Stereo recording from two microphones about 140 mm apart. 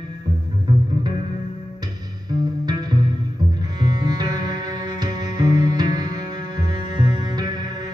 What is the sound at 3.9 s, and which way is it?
Music, 30° right (ahead or behind).